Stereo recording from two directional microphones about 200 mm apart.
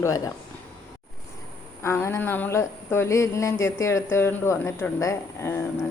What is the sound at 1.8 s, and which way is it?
Speech, 10° left (ahead or behind).